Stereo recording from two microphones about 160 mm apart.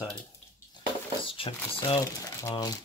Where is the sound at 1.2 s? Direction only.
35° left (ahead or behind).